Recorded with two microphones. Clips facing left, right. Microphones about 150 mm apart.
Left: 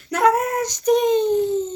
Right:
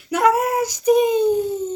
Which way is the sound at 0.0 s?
5° right (ahead or behind).